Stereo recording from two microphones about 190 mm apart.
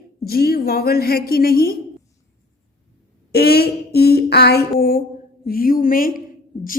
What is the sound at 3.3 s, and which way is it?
A woman's voice, 55° left (ahead or behind).